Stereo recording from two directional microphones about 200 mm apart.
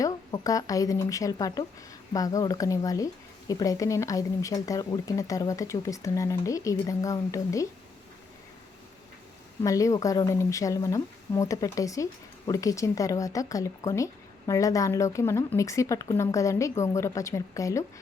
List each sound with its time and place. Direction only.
0.0 s speech: 15° left (ahead or behind)
9.6 s speech: 15° left (ahead or behind)